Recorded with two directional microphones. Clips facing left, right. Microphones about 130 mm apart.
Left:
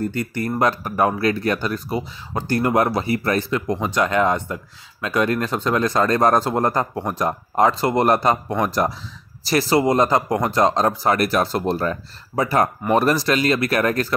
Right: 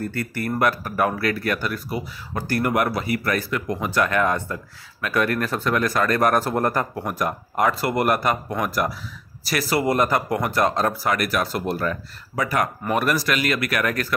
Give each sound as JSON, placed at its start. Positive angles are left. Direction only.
{"t": 0.0, "sound": "speech", "side_deg": 20}